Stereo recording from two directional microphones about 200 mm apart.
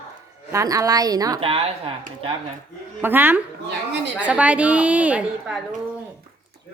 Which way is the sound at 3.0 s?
10° right (ahead or behind).